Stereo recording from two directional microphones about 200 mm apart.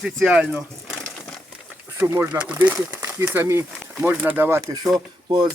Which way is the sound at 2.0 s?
10° right (ahead or behind).